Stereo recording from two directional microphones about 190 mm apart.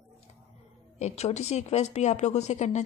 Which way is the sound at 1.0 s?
35° left (ahead or behind).